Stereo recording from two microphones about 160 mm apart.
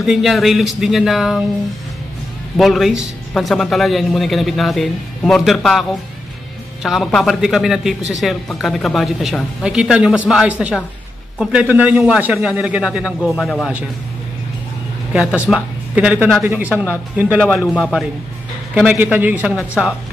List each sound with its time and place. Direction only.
0.0 s a man's voice: centre (ahead or behind)
2.5 s a man's voice: centre (ahead or behind)
15.1 s a man's voice: 5° right (ahead or behind)
16.7 s a man's voice: 15° left (ahead or behind); by 19.6 s 10° right (ahead or behind)